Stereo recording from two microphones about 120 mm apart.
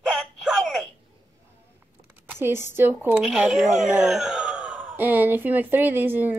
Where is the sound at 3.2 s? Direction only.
Centre (ahead or behind).